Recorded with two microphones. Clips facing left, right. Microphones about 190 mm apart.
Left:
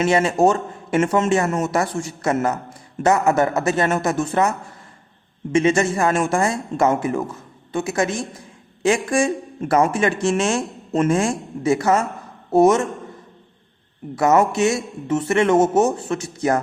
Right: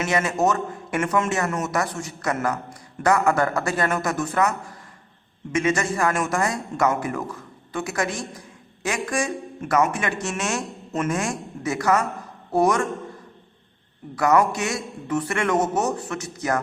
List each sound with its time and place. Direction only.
0.0 s a man's voice: 30° left (ahead or behind)
14.2 s a man's voice: 25° left (ahead or behind)